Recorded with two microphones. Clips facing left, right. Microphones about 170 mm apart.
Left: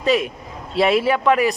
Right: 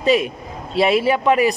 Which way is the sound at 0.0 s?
5° right (ahead or behind).